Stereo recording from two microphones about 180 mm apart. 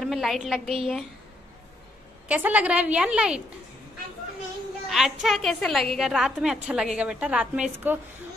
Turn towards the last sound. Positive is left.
turn(degrees=-5)  # may be behind; listen again after turning